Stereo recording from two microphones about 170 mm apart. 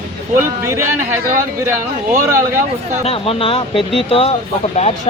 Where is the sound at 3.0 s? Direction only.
35° left (ahead or behind).